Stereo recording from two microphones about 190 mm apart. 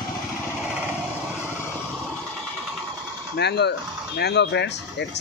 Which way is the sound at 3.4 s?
60° left (ahead or behind).